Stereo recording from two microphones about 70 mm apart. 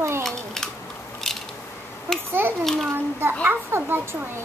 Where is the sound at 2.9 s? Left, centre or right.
Right.